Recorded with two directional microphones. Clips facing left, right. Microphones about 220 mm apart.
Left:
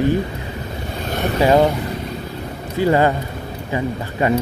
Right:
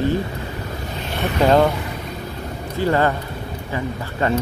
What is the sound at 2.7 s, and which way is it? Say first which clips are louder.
Speech: left 3 dB; 15° left (ahead or behind).